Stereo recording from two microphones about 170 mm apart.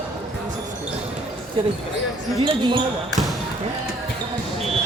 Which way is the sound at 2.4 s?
25° right (ahead or behind).